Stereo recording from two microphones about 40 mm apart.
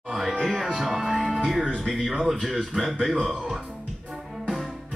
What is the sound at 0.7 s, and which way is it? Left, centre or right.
Speech, centre.